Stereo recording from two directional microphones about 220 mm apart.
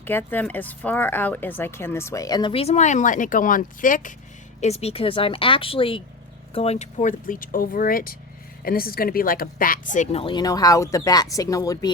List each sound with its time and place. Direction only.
0.0 s speech: 10° left (ahead or behind)